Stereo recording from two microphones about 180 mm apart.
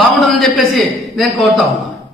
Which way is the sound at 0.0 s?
Centre (ahead or behind).